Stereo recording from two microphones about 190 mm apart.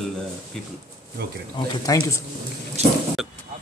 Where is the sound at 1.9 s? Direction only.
15° left (ahead or behind).